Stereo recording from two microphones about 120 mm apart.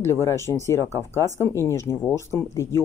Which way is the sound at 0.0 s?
20° left (ahead or behind).